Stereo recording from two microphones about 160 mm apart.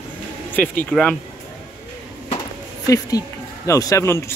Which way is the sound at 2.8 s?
20° left (ahead or behind).